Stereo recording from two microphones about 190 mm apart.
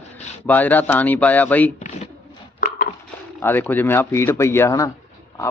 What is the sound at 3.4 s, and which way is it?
Speech, 10° left (ahead or behind).